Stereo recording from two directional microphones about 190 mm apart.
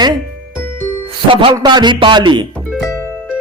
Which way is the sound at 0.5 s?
10° left (ahead or behind).